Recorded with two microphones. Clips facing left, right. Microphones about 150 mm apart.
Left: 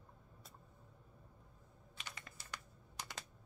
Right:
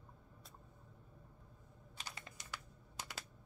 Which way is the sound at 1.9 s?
35° right (ahead or behind).